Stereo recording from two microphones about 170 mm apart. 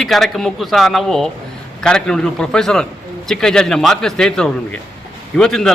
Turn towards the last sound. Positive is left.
turn(degrees=5)  # may be behind; listen again after turning